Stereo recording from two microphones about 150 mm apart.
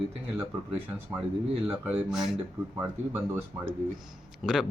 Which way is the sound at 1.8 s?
5° right (ahead or behind).